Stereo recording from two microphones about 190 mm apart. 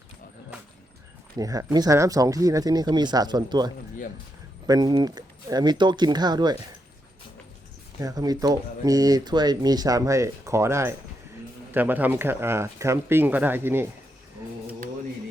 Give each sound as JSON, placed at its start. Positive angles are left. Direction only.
{"t": 1.4, "sound": "speech", "side_deg": -20}
{"t": 8.0, "sound": "speech", "side_deg": -20}